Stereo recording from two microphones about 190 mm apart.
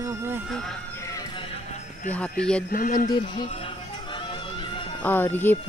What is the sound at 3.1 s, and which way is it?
Music, 25° left (ahead or behind).